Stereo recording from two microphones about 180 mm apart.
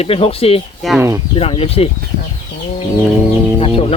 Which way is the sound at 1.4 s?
30° left (ahead or behind).